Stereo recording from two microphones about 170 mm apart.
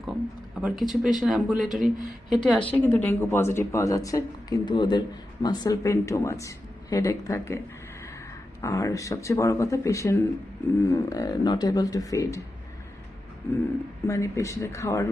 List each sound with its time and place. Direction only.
0.5 s speech: centre (ahead or behind); by 7.6 s 15° left (ahead or behind)
8.6 s speech: 20° left (ahead or behind)
14.1 s speech: 15° left (ahead or behind)